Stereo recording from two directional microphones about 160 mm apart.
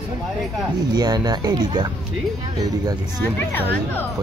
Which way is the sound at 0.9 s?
25° right (ahead or behind).